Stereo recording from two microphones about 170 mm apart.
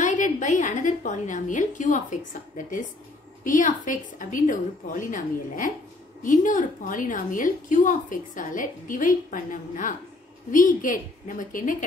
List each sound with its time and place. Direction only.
0.0 s a woman's voice: 45° left (ahead or behind)